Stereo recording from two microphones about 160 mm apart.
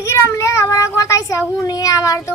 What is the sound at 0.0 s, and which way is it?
Cat, 20° left (ahead or behind).